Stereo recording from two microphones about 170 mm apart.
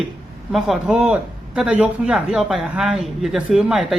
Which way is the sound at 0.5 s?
Centre (ahead or behind).